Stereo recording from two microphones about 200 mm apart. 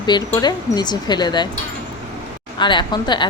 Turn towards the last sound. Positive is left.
turn(degrees=20)  # may be behind; listen again after turning